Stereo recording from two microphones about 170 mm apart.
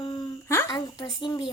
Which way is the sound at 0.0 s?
25° left (ahead or behind).